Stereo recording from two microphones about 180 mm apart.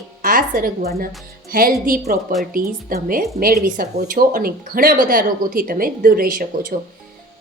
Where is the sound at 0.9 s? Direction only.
55° right (ahead or behind).